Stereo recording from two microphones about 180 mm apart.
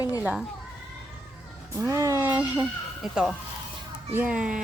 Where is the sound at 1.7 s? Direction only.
15° right (ahead or behind).